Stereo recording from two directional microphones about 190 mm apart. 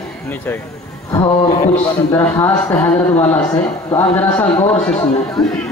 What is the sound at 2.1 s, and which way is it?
Speech, 10° left (ahead or behind).